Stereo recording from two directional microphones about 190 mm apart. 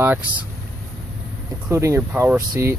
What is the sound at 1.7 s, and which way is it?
Speech, 15° right (ahead or behind).